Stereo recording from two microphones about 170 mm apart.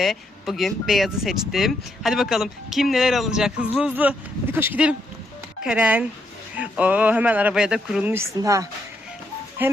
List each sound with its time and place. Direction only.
0.0 s speech: centre (ahead or behind)
8.4 s speech: 20° right (ahead or behind)